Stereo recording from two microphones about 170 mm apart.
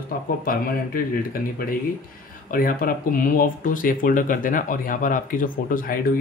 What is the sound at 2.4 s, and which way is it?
Speech, 55° left (ahead or behind).